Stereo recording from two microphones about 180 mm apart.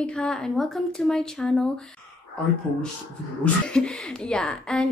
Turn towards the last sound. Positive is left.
turn(degrees=5)  # may be behind; listen again after turning